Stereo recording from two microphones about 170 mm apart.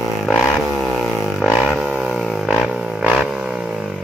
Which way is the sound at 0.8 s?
Centre (ahead or behind).